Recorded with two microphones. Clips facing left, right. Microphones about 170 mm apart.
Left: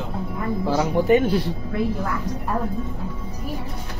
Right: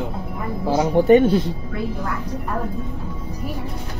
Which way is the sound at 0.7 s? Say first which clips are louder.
Right 5 dB; 30° right (ahead or behind).